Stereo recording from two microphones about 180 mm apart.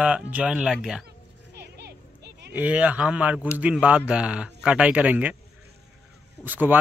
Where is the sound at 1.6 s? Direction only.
65° right (ahead or behind).